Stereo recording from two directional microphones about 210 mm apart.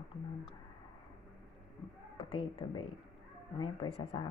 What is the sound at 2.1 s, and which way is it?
A woman's voice, 25° left (ahead or behind).